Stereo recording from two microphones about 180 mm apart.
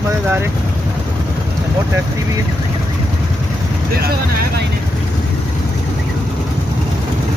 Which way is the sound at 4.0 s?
60° right (ahead or behind).